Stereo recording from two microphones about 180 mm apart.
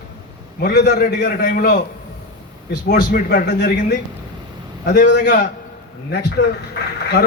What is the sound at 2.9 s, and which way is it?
A man's voice, 55° left (ahead or behind).